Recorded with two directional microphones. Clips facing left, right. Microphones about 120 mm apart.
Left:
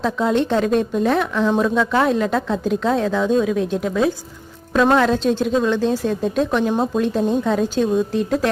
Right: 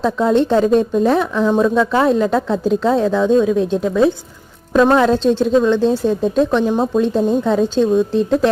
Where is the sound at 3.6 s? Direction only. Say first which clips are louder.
Right 4 dB; 30° right (ahead or behind).